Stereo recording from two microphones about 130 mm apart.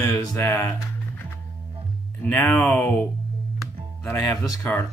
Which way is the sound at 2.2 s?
15° left (ahead or behind).